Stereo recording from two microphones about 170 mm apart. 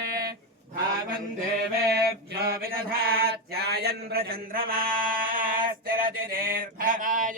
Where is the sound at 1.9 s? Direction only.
65° right (ahead or behind).